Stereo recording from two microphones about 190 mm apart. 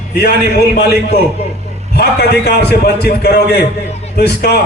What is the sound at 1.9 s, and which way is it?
A man's voice, 60° left (ahead or behind).